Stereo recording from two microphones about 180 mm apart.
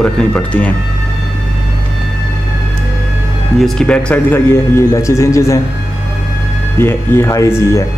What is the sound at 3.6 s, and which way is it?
Speech, centre (ahead or behind).